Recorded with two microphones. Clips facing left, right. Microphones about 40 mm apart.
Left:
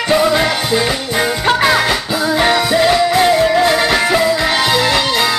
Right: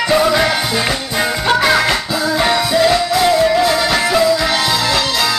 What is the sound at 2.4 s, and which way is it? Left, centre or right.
Music, left.